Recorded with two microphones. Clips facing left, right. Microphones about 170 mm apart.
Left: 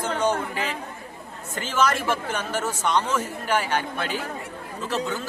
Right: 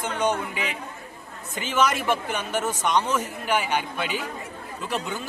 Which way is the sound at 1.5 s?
10° right (ahead or behind).